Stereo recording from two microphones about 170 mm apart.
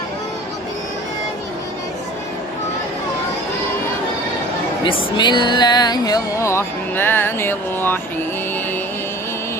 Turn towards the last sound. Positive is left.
turn(degrees=10)  # may be behind; listen again after turning